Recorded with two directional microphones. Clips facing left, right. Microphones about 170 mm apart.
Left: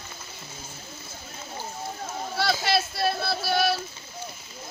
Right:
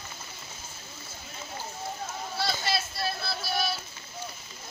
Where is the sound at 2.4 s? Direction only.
70° left (ahead or behind).